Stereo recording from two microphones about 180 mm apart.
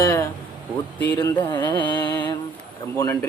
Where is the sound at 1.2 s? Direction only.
25° left (ahead or behind).